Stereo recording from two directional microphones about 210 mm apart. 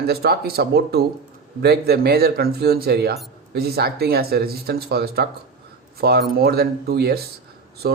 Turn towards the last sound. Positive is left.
turn(degrees=-45)  # may be behind; listen again after turning